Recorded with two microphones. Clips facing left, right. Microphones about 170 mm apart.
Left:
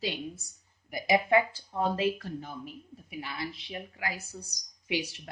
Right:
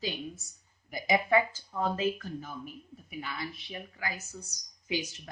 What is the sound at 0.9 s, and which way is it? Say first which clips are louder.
Speech: left 2 dB; 20° left (ahead or behind).